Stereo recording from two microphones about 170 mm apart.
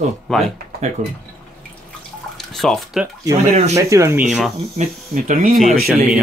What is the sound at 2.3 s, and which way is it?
Speech, centre (ahead or behind).